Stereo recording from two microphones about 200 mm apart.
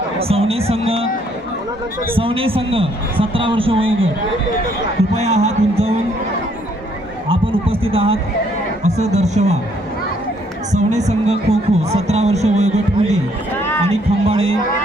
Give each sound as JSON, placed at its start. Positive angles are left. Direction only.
{"t": 0.2, "sound": "a man's voice", "side_deg": -30}
{"t": 2.1, "sound": "a man's voice", "side_deg": -25}
{"t": 5.1, "sound": "speech", "side_deg": -35}
{"t": 7.3, "sound": "a sound", "side_deg": -25}
{"t": 9.0, "sound": "speech", "side_deg": -35}
{"t": 10.7, "sound": "a man's voice", "side_deg": -35}